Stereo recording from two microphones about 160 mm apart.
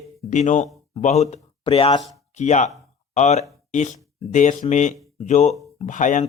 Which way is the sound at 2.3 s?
45° left (ahead or behind).